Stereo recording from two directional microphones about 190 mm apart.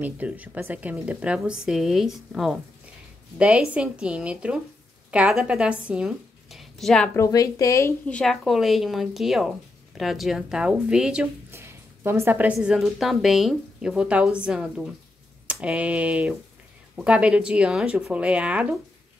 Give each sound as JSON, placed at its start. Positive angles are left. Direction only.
{"t": 0.0, "sound": "a woman's voice", "side_deg": -10}
{"t": 7.2, "sound": "a woman's voice", "side_deg": 15}
{"t": 8.1, "sound": "a woman's voice", "side_deg": 5}